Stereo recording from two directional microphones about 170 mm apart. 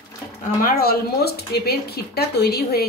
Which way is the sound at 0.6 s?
65° left (ahead or behind).